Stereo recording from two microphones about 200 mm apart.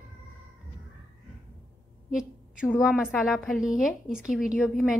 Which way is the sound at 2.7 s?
Centre (ahead or behind).